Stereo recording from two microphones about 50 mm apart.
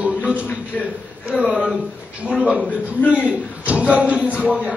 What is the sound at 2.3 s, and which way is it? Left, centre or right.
A man's voice, centre.